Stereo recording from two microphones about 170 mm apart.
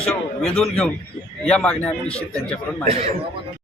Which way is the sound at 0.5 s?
Centre (ahead or behind).